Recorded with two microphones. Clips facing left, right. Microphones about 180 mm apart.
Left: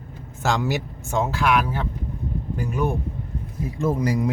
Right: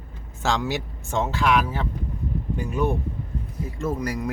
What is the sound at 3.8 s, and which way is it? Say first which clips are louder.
Speech: left 5 dB; 25° left (ahead or behind).